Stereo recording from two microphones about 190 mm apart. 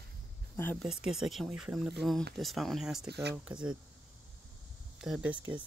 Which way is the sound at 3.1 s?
60° right (ahead or behind).